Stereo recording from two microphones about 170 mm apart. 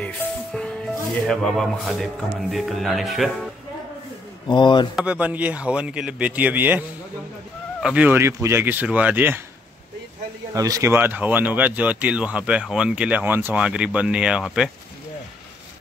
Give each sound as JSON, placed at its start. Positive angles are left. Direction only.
{"t": 0.0, "sound": "music", "side_deg": 5}
{"t": 1.2, "sound": "speech", "side_deg": 0}
{"t": 4.5, "sound": "speech", "side_deg": 25}
{"t": 4.9, "sound": "speech", "side_deg": -5}
{"t": 7.8, "sound": "speech", "side_deg": -10}
{"t": 10.5, "sound": "speech", "side_deg": -20}